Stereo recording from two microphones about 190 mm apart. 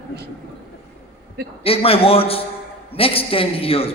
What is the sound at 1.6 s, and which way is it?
A man's voice, 30° left (ahead or behind).